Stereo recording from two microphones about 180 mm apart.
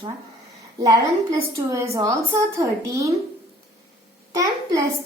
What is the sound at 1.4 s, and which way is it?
A child's voice, 15° right (ahead or behind).